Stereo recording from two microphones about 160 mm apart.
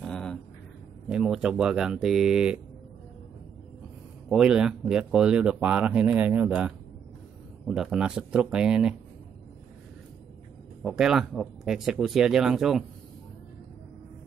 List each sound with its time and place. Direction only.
0.0 s a sound: 5° left (ahead or behind)
1.0 s speech: 5° right (ahead or behind)
4.3 s speech: 5° right (ahead or behind)
10.8 s speech: 5° right (ahead or behind)